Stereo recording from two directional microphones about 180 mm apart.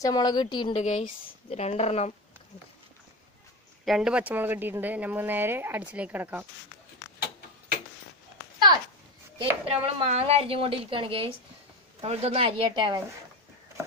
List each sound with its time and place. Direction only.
0.0 s a woman's voice: 20° left (ahead or behind)
0.8 s a woman's voice: 45° left (ahead or behind)
3.8 s a woman's voice: centre (ahead or behind)
9.4 s a woman's voice: 30° right (ahead or behind)